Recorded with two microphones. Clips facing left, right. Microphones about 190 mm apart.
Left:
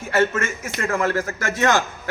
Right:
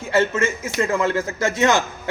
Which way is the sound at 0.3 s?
25° right (ahead or behind).